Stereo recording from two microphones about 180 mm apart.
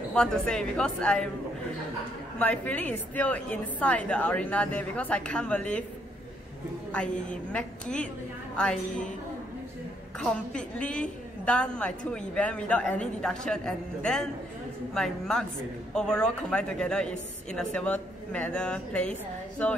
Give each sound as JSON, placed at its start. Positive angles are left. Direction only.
{"t": 0.1, "sound": "a woman's voice", "side_deg": 5}
{"t": 2.3, "sound": "a woman's voice", "side_deg": 10}
{"t": 7.5, "sound": "a woman's voice", "side_deg": 5}
{"t": 10.2, "sound": "a woman's voice", "side_deg": 5}